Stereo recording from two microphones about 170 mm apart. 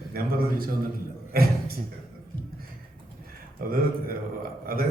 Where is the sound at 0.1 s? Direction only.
60° right (ahead or behind).